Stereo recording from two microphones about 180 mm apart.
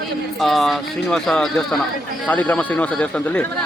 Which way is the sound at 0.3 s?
Centre (ahead or behind).